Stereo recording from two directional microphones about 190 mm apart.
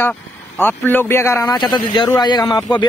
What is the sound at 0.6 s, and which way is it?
A man's voice, 10° left (ahead or behind).